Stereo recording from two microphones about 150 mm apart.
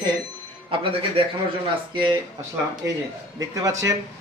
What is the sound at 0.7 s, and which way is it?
Speech, 35° right (ahead or behind).